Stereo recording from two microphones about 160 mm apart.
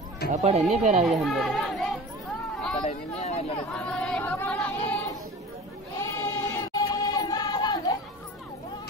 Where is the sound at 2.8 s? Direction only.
40° left (ahead or behind).